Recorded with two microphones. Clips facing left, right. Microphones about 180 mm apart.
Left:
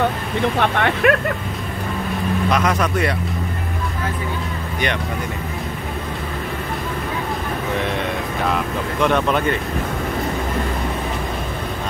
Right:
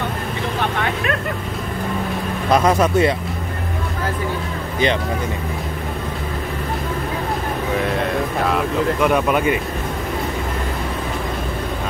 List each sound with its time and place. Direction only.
0.6 s speech: 65° left (ahead or behind)
2.5 s speech: 30° right (ahead or behind)
9.0 s speech: 10° right (ahead or behind)